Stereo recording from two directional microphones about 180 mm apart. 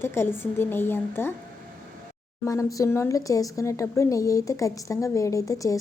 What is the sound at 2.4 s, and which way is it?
A woman's voice, 15° left (ahead or behind).